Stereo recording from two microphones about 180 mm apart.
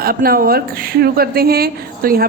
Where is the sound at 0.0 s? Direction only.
55° right (ahead or behind).